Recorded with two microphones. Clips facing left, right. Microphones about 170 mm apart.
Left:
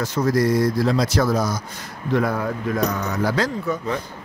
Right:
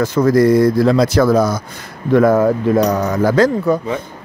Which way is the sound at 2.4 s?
40° right (ahead or behind).